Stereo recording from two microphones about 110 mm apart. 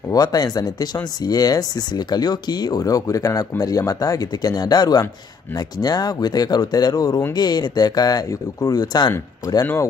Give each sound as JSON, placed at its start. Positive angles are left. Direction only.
{"t": 0.1, "sound": "speech", "side_deg": 35}